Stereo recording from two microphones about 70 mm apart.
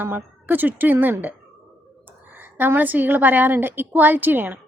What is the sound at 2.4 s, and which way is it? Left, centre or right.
A woman's voice, right.